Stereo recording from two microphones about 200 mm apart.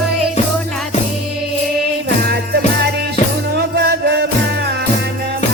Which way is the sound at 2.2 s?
55° right (ahead or behind).